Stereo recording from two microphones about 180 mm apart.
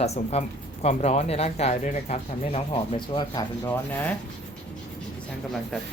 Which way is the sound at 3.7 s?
10° left (ahead or behind).